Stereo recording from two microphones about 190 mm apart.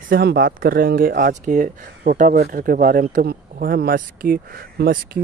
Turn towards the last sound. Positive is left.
turn(degrees=-50)  # may be behind; listen again after turning